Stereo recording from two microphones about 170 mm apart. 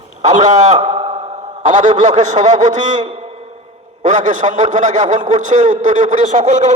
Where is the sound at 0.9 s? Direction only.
40° right (ahead or behind).